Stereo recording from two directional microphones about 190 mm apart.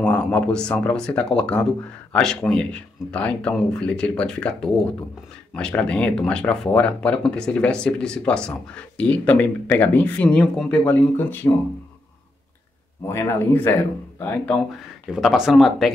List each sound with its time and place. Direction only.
0.0 s speech: 5° left (ahead or behind)
13.0 s speech: 15° left (ahead or behind)